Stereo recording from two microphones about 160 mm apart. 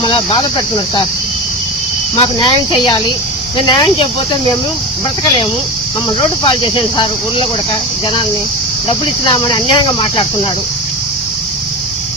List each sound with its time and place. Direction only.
0.0 s cricket: 30° left (ahead or behind)
2.1 s cricket: 30° left (ahead or behind)
6.1 s speech: 30° left (ahead or behind)
8.9 s cricket: 30° left (ahead or behind)